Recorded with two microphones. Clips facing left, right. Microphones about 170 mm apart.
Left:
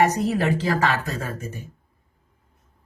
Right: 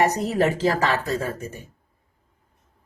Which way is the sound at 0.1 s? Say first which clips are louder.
Even; 40° right (ahead or behind).